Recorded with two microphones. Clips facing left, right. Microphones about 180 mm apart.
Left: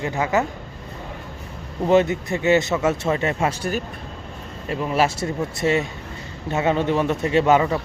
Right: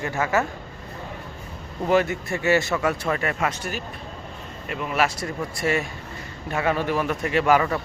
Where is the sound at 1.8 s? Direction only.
20° left (ahead or behind).